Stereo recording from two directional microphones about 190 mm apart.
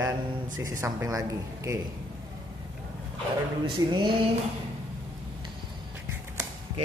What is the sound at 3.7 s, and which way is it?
Speech, 25° right (ahead or behind).